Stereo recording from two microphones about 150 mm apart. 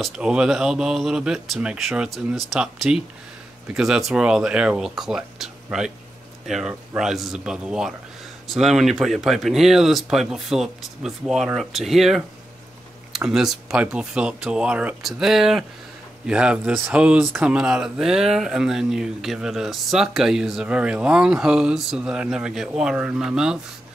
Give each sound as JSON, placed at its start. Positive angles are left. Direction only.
{"t": 0.0, "sound": "speech", "side_deg": -5}